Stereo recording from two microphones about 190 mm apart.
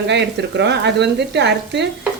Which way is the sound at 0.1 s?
65° right (ahead or behind).